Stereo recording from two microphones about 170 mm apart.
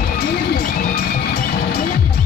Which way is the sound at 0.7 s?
55° left (ahead or behind).